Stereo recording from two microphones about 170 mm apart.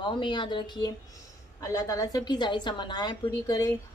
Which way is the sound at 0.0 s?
30° left (ahead or behind).